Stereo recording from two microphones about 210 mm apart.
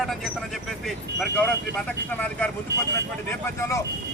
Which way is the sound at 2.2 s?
5° left (ahead or behind).